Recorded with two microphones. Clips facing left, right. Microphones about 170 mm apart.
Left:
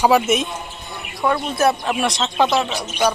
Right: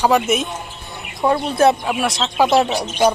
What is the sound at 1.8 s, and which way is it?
Speech, centre (ahead or behind).